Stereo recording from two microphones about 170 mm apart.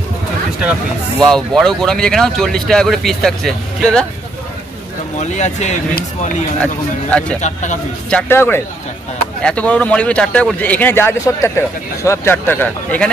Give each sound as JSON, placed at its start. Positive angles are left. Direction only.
{"t": 1.2, "sound": "speech", "side_deg": 5}
{"t": 5.2, "sound": "speech", "side_deg": 40}
{"t": 6.6, "sound": "speech", "side_deg": 5}
{"t": 7.3, "sound": "speech", "side_deg": 45}
{"t": 8.1, "sound": "speech", "side_deg": 10}